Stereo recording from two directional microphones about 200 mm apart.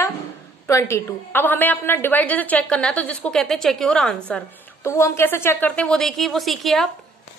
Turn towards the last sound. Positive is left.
turn(degrees=0)  # may be behind; listen again after turning